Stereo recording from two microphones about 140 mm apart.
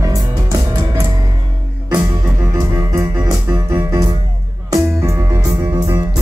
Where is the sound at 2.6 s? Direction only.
20° right (ahead or behind).